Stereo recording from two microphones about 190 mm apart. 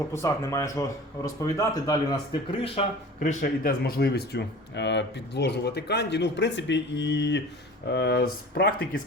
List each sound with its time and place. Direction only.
0.1 s speech: 15° left (ahead or behind)
2.6 s speech: 30° left (ahead or behind)
3.2 s speech: 50° left (ahead or behind)